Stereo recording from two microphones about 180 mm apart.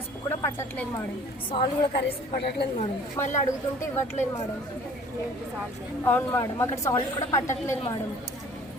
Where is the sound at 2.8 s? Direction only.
45° left (ahead or behind).